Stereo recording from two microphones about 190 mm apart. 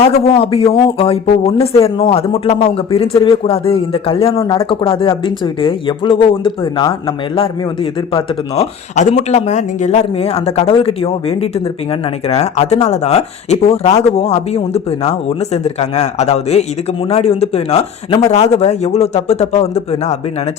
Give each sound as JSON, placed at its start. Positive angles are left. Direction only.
{"t": 0.3, "sound": "speech", "side_deg": 30}
{"t": 8.5, "sound": "speech", "side_deg": 35}